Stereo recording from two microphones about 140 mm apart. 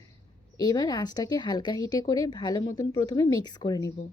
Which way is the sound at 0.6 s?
30° left (ahead or behind).